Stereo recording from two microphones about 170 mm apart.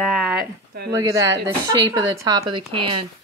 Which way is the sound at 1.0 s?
20° right (ahead or behind).